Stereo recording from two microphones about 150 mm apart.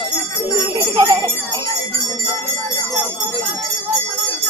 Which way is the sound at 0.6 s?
20° right (ahead or behind).